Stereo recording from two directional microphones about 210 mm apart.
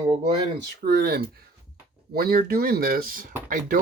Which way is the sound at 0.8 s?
45° right (ahead or behind).